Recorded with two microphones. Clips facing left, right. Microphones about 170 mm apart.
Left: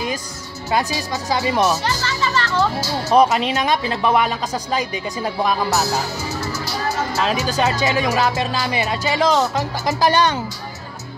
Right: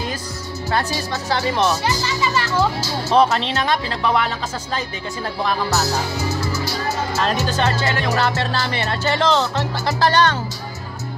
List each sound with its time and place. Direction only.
0.7 s speech: 15° left (ahead or behind)
1.9 s a child's voice: 15° right (ahead or behind)
3.1 s speech: 10° left (ahead or behind)
7.2 s speech: 5° left (ahead or behind)